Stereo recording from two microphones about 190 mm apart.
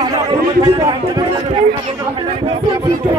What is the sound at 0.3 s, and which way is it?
A man's voice, 30° right (ahead or behind).